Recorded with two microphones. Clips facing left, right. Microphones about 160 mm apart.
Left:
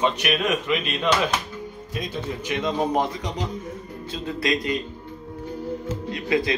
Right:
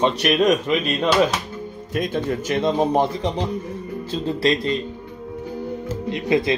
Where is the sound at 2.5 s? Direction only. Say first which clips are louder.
Right 4 dB; 30° right (ahead or behind).